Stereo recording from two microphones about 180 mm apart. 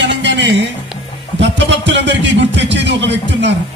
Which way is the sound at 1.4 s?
80° right.